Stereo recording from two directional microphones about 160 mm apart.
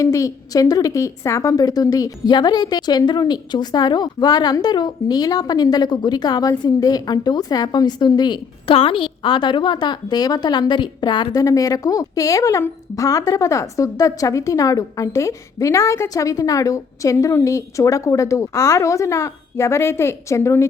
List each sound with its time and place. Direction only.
0.0 s a woman's voice: 20° left (ahead or behind)